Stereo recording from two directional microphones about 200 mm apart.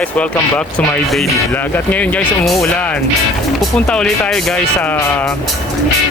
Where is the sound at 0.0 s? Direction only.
5° left (ahead or behind).